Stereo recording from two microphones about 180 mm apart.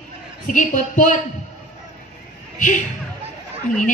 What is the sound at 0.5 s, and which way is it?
Speech, 45° left (ahead or behind).